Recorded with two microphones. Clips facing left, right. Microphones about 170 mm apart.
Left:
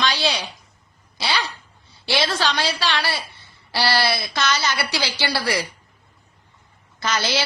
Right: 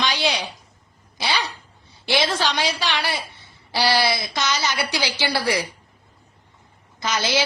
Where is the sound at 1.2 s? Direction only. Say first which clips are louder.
Even; 15° right (ahead or behind).